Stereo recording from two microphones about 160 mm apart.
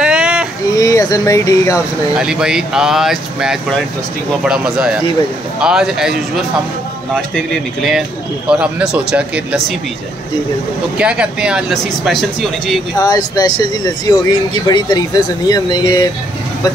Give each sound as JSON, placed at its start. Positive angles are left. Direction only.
{"t": 0.0, "sound": "a sound", "side_deg": -5}
{"t": 0.7, "sound": "speech", "side_deg": 20}
{"t": 2.1, "sound": "speech", "side_deg": -5}
{"t": 7.2, "sound": "speech", "side_deg": 0}
{"t": 11.0, "sound": "speech", "side_deg": -5}
{"t": 13.0, "sound": "speech", "side_deg": 25}
{"t": 14.7, "sound": "speech", "side_deg": 25}